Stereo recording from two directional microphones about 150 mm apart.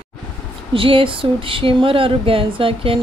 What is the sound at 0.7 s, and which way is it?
Speech, 35° right (ahead or behind).